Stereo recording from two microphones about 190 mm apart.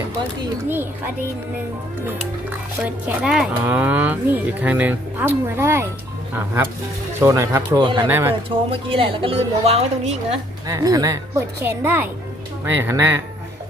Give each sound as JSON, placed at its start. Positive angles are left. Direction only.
{"t": 0.7, "sound": "speech", "side_deg": -10}
{"t": 2.5, "sound": "speech", "side_deg": -5}
{"t": 8.0, "sound": "speech", "side_deg": -10}
{"t": 8.4, "sound": "a woman's voice", "side_deg": -30}
{"t": 10.7, "sound": "speech", "side_deg": -20}